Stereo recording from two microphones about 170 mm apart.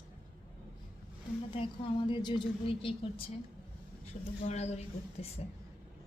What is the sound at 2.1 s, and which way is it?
A woman's voice, 30° left (ahead or behind).